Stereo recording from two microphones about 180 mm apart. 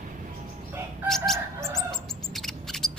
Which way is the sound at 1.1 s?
Centre (ahead or behind).